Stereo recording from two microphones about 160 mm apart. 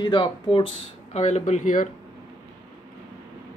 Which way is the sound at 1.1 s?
45° left (ahead or behind).